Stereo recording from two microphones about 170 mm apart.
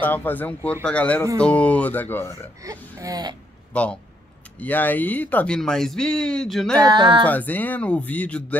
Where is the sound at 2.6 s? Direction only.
20° right (ahead or behind).